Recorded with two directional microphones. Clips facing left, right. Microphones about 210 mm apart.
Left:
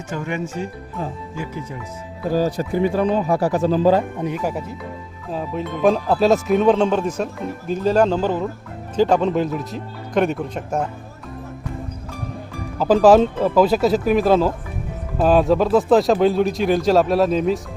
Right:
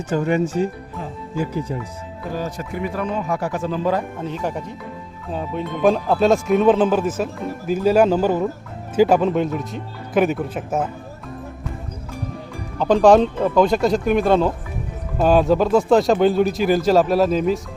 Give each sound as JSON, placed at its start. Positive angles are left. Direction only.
{"t": 0.1, "sound": "speech", "side_deg": -35}
{"t": 2.3, "sound": "speech", "side_deg": 35}
{"t": 4.2, "sound": "speech", "side_deg": 10}
{"t": 12.8, "sound": "speech", "side_deg": 5}